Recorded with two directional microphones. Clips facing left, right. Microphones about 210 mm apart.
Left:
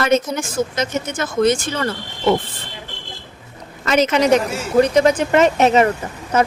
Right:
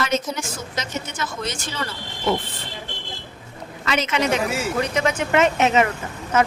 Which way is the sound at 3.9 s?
40° left (ahead or behind).